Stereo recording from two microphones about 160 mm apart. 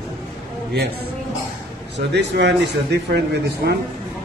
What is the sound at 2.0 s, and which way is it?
Speech, 90° right.